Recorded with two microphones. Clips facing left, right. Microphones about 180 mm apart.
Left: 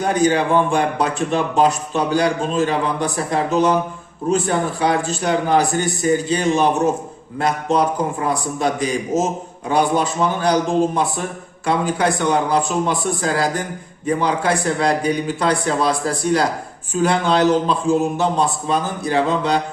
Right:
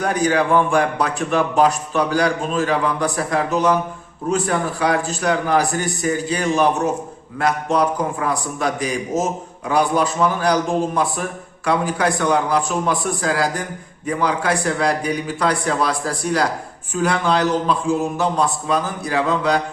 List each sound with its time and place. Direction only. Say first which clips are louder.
0.0 s a man's voice: left 2 dB; 25° left (ahead or behind)